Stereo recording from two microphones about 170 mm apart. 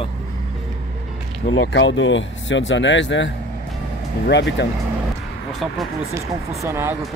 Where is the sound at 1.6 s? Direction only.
90° left.